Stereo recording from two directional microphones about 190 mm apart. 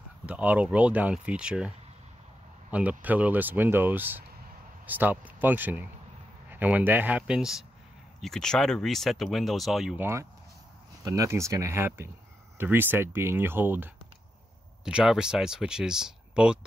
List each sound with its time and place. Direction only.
0.3 s speech: 5° right (ahead or behind)
2.7 s speech: 10° right (ahead or behind)
11.1 s speech: 15° right (ahead or behind)